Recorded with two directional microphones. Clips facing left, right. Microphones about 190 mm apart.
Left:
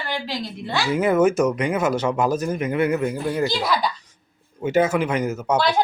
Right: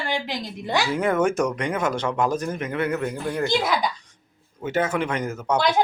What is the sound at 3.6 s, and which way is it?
Speech, 20° right (ahead or behind).